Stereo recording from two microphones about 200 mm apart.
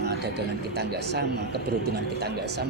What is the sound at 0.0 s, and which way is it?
Speech, 55° right (ahead or behind).